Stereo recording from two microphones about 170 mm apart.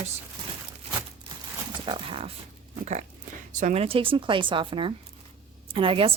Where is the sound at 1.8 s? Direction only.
30° right (ahead or behind).